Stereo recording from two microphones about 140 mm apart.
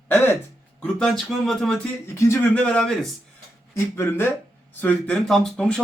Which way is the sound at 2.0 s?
20° left (ahead or behind).